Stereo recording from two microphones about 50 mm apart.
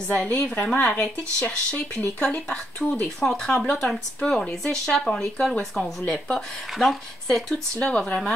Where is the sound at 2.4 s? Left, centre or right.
Centre.